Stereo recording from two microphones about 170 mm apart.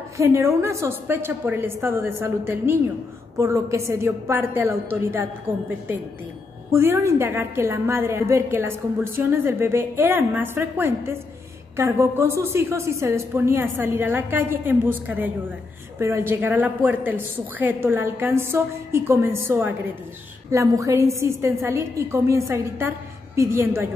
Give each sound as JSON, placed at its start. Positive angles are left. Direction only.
{"t": 0.2, "sound": "a woman's voice", "side_deg": -15}
{"t": 6.7, "sound": "a woman's voice", "side_deg": -15}